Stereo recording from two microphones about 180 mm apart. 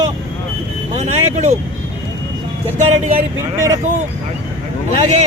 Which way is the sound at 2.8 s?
35° right (ahead or behind).